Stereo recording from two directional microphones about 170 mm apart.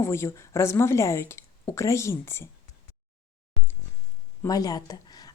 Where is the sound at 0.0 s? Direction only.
15° left (ahead or behind).